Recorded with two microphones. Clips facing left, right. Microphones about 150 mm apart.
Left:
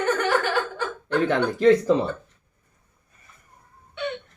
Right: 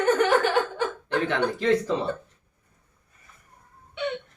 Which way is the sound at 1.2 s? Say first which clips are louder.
Left 6 dB; 45° left (ahead or behind).